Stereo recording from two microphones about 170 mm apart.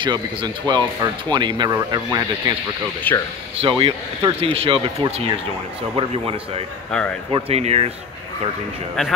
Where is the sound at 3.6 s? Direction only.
30° right (ahead or behind).